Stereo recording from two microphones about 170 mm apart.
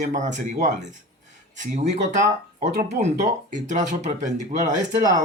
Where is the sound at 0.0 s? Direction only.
45° right (ahead or behind).